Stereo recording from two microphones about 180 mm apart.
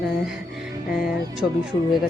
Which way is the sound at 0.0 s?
5° right (ahead or behind).